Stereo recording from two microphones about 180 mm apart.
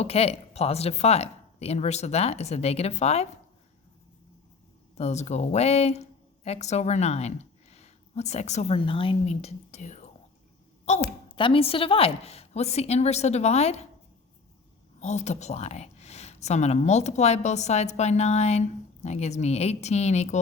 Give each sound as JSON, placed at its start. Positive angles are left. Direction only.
{"t": 0.0, "sound": "speech", "side_deg": 35}
{"t": 4.9, "sound": "speech", "side_deg": 35}
{"t": 11.3, "sound": "speech", "side_deg": 30}
{"t": 15.0, "sound": "speech", "side_deg": 40}